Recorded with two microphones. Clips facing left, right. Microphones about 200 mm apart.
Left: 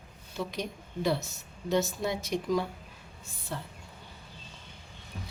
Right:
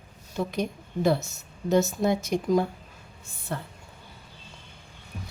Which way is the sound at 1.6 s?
45° right (ahead or behind).